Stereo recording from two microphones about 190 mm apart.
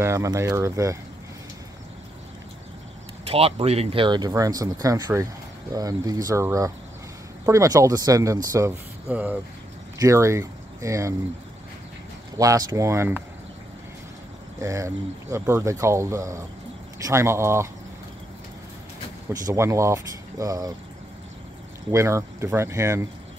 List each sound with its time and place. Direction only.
0.0 s speech: 15° right (ahead or behind)
3.3 s speech: 30° right (ahead or behind); by 11.1 s 15° right (ahead or behind)
12.4 s speech: 20° right (ahead or behind)
14.6 s speech: 15° right (ahead or behind)
19.4 s speech: 15° right (ahead or behind)
21.9 s speech: 15° right (ahead or behind)